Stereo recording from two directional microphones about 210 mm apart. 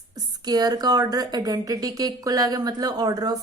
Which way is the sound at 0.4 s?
20° right (ahead or behind).